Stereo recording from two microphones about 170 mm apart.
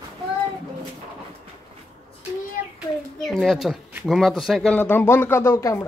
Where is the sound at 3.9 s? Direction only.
5° right (ahead or behind).